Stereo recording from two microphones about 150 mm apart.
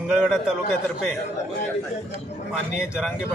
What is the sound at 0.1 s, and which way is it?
Speech, 5° right (ahead or behind).